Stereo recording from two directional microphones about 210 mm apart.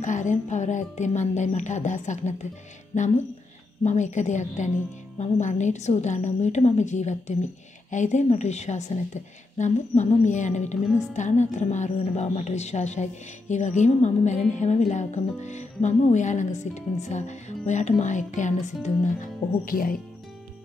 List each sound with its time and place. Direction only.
0.0 s a woman's voice: 35° left (ahead or behind)